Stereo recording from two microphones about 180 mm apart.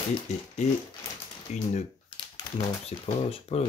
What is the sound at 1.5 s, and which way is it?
Speech, 40° left (ahead or behind).